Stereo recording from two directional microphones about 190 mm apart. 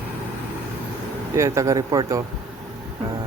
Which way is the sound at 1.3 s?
15° right (ahead or behind).